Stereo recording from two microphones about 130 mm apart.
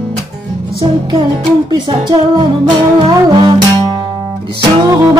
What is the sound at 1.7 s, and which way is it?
Music, 30° right (ahead or behind).